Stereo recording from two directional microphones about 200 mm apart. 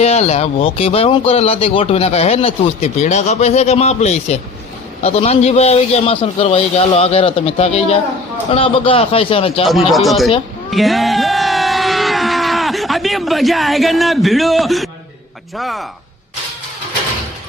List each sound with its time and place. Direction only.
0.0 s a man's voice: 30° left (ahead or behind)
9.6 s speech: centre (ahead or behind)
10.7 s a sound: centre (ahead or behind)
15.5 s speech: centre (ahead or behind)